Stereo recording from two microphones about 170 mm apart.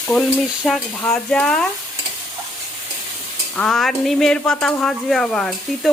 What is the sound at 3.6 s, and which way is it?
Speech, centre (ahead or behind).